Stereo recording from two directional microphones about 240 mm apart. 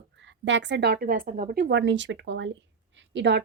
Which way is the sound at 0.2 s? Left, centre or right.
Right.